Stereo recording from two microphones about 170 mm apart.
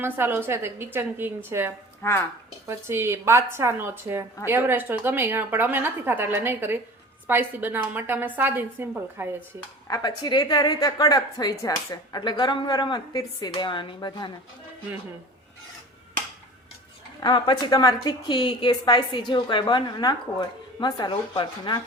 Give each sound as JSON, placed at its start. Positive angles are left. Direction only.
{"t": 0.0, "sound": "a woman's voice", "side_deg": -15}
{"t": 2.0, "sound": "speech", "side_deg": 15}
{"t": 2.6, "sound": "a woman's voice", "side_deg": -15}
{"t": 9.9, "sound": "a woman's voice", "side_deg": 25}
{"t": 17.2, "sound": "a woman's voice", "side_deg": 25}